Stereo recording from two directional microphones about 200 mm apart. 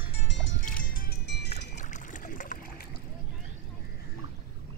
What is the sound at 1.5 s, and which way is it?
Boat, 35° left (ahead or behind).